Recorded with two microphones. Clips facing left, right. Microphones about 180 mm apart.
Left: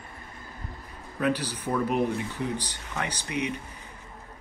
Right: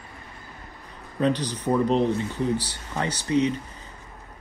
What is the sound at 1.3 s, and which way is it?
Speech, 10° left (ahead or behind).